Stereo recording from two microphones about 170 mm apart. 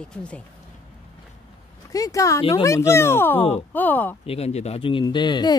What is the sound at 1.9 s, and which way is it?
Speech, 20° left (ahead or behind).